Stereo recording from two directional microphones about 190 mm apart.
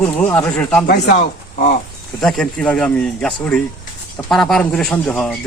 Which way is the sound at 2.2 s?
5° left (ahead or behind).